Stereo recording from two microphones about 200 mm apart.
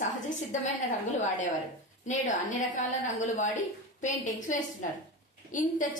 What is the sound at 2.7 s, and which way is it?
A woman's voice, 35° left (ahead or behind).